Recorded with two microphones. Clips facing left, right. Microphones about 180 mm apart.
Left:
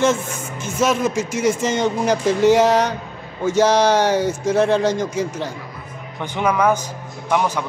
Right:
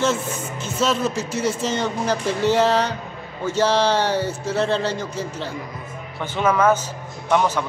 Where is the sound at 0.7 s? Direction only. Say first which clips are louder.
Left 3 dB; 10° left (ahead or behind).